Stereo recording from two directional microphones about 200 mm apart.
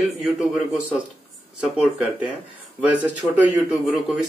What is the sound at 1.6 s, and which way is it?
Speech, 5° right (ahead or behind).